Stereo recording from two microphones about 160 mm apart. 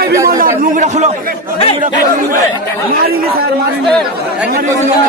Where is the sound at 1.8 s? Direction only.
60° right (ahead or behind).